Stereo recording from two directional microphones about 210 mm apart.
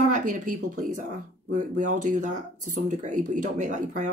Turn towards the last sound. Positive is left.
turn(degrees=-35)  # may be behind; listen again after turning